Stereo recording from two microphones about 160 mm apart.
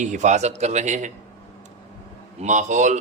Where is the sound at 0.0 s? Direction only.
50° right (ahead or behind).